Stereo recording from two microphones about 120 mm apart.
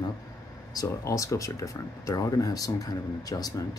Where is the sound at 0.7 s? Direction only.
25° left (ahead or behind).